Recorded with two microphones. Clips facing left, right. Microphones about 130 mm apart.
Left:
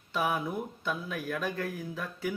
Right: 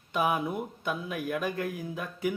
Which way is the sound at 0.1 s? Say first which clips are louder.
Right 2 dB; 15° right (ahead or behind).